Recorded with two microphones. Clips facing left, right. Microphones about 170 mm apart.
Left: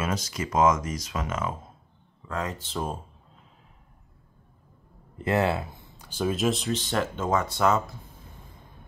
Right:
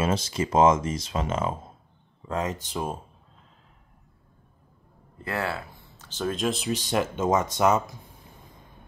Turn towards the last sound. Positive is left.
turn(degrees=-20)  # may be behind; listen again after turning